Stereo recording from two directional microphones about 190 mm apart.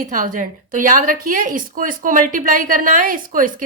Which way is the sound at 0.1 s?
45° right (ahead or behind).